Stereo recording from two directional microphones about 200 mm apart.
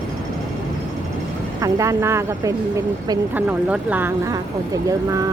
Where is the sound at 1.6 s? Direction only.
15° right (ahead or behind).